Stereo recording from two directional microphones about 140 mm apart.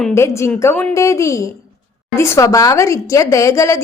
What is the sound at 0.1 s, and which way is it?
Speech, 20° left (ahead or behind).